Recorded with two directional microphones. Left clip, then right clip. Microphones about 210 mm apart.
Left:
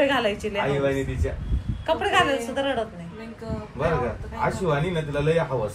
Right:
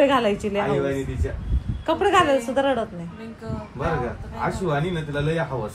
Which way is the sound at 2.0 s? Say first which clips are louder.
Right 4 dB; 45° right (ahead or behind).